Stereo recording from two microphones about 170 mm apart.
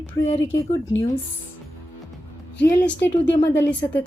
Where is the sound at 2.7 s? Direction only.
10° left (ahead or behind).